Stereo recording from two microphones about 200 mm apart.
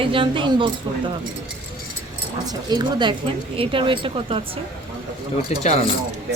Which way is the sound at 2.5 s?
20° right (ahead or behind).